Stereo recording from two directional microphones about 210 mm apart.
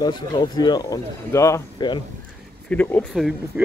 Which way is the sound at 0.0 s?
20° left (ahead or behind).